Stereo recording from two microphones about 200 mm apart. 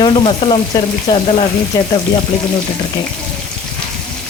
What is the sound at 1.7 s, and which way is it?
Speech, 15° left (ahead or behind).